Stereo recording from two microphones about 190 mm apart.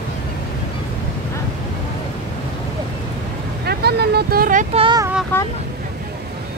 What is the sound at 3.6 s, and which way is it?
Vehicle, 60° right (ahead or behind).